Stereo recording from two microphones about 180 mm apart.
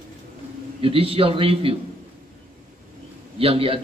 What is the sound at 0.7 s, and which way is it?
A man's voice, 30° right (ahead or behind).